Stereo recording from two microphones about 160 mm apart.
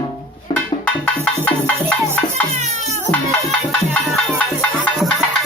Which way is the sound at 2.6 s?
45° right (ahead or behind).